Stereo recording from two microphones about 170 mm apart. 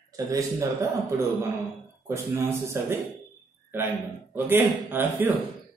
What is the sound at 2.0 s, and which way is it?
Speech, 15° right (ahead or behind).